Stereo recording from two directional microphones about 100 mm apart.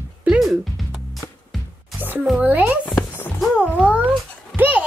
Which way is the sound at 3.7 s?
15° right (ahead or behind).